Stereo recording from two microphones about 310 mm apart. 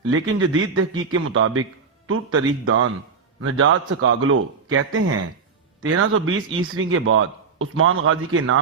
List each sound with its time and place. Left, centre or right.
0.1 s a man's voice: right